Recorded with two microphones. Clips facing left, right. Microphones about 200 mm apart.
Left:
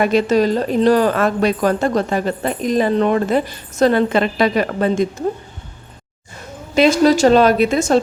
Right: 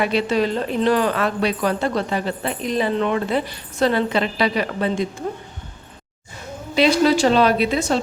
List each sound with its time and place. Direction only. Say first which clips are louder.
0.0 s a woman's voice: left 5 dB; 45° left (ahead or behind)
6.7 s a woman's voice: left 4 dB; 45° left (ahead or behind)